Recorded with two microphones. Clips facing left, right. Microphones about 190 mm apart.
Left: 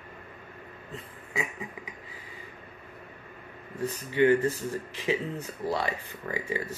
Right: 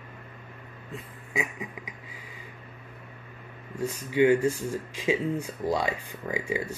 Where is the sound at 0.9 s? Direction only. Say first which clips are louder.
Right 3 dB; 15° right (ahead or behind).